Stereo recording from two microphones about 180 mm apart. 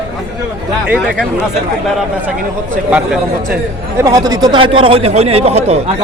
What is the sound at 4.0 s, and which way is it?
A man's voice, 20° right (ahead or behind).